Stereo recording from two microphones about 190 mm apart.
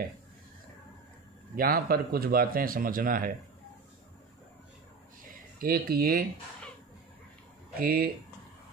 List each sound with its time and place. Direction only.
1.5 s speech: 50° right (ahead or behind)
5.6 s speech: 50° right (ahead or behind)
7.8 s speech: 50° right (ahead or behind)